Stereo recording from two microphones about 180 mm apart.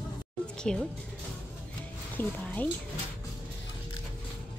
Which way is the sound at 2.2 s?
10° left (ahead or behind).